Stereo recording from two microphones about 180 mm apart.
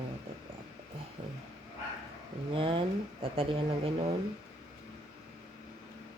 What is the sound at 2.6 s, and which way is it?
Speech, 30° right (ahead or behind).